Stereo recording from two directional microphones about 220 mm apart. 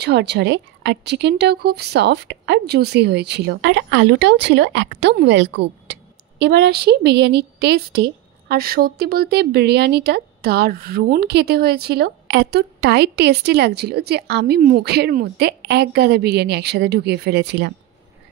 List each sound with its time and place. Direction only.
0.0 s speech: 50° right (ahead or behind)